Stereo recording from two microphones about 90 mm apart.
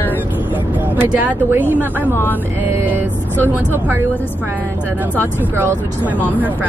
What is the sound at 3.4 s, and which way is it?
Speech, 25° right (ahead or behind).